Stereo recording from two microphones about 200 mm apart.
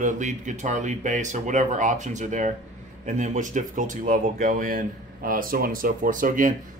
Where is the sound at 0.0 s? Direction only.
40° right (ahead or behind).